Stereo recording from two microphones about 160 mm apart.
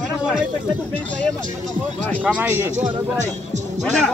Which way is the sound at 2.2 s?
10° right (ahead or behind).